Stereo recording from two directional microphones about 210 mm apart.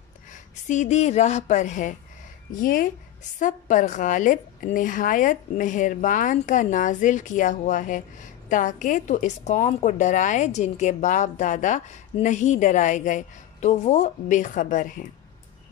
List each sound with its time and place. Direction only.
0.3 s a woman's voice: 35° left (ahead or behind)